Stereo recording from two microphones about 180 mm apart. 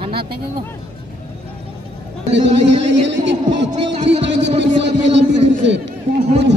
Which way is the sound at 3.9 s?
40° right (ahead or behind).